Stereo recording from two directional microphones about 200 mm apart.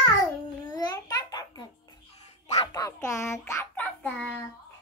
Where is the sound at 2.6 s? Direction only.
20° left (ahead or behind).